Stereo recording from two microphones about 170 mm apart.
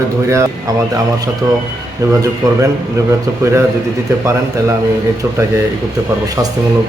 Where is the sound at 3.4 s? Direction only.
15° right (ahead or behind).